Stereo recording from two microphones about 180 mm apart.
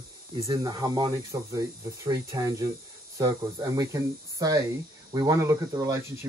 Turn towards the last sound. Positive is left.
turn(degrees=-15)  # may be behind; listen again after turning